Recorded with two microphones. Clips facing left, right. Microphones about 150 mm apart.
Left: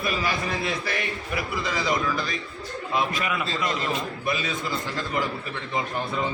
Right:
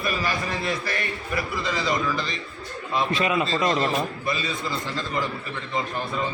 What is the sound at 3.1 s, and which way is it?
Speech, 25° right (ahead or behind).